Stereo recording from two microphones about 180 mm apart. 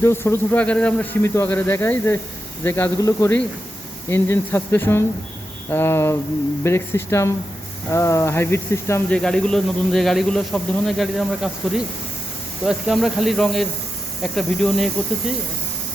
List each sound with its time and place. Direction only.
0.0 s speech: 15° left (ahead or behind)
9.1 s speech: 5° left (ahead or behind)